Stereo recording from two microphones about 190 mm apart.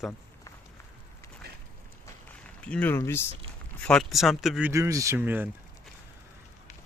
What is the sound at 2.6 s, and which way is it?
Speech, 5° left (ahead or behind).